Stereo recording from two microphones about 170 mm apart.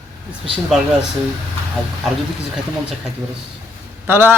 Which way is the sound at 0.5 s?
5° right (ahead or behind).